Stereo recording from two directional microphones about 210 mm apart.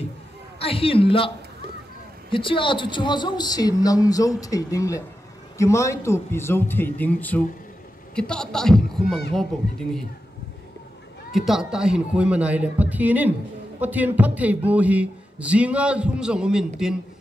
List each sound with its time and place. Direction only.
0.6 s speech: 25° left (ahead or behind)
2.3 s a man's voice: 25° left (ahead or behind); by 9.2 s centre (ahead or behind)
11.3 s speech: centre (ahead or behind)